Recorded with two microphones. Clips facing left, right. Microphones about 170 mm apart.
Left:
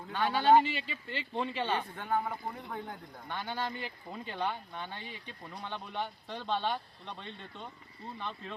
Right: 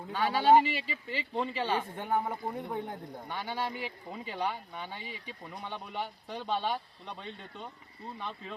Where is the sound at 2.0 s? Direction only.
25° right (ahead or behind).